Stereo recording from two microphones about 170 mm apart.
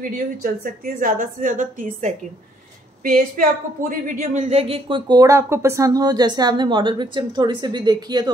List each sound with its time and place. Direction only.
0.0 s a woman's voice: 55° right (ahead or behind); by 8.3 s 25° right (ahead or behind)